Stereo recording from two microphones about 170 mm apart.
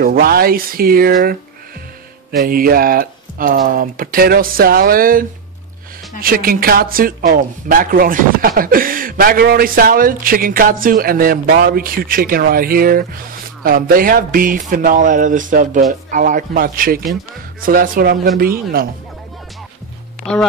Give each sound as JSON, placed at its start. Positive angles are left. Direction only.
{"t": 0.0, "sound": "speech", "side_deg": -60}
{"t": 2.3, "sound": "speech", "side_deg": -60}
{"t": 6.2, "sound": "speech", "side_deg": -60}